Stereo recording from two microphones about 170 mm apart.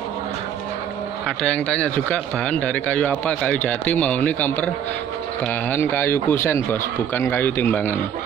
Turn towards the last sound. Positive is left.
turn(degrees=10)  # may be behind; listen again after turning